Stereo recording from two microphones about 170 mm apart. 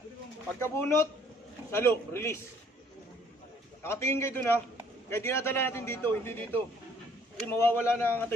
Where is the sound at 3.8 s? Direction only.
15° left (ahead or behind).